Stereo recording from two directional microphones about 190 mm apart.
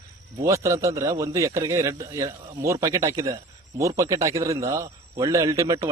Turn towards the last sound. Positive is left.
turn(degrees=-15)  # may be behind; listen again after turning